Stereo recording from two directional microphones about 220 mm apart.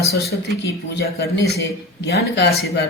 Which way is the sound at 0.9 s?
50° left (ahead or behind).